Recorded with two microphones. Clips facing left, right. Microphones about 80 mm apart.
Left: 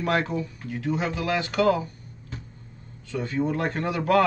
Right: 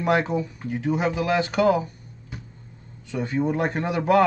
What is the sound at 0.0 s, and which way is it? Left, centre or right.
Speech, centre.